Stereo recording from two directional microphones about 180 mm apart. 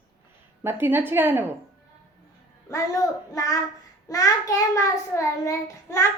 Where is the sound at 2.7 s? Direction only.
20° left (ahead or behind).